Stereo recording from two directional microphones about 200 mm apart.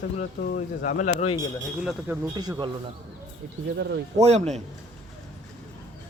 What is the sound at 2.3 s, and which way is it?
Speech, 20° right (ahead or behind).